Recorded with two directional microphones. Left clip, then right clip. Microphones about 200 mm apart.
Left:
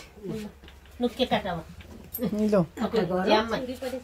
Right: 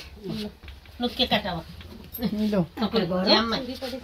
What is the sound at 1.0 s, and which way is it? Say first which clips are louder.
Speech: right 2 dB; 5° left (ahead or behind).